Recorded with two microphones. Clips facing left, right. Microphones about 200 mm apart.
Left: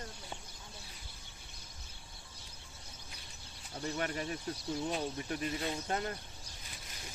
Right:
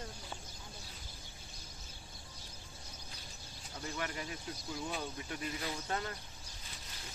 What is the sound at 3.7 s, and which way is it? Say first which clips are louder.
Speech: left 4 dB; 35° left (ahead or behind).